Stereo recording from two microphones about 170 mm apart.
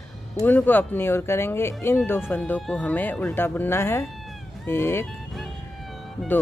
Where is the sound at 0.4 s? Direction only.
10° left (ahead or behind).